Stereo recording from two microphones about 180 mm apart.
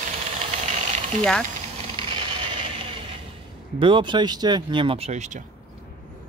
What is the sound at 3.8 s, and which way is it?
Speech, 25° right (ahead or behind).